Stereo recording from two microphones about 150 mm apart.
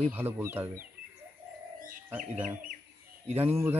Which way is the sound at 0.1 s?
15° right (ahead or behind).